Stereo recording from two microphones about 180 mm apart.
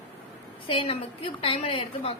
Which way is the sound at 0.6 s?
30° left (ahead or behind).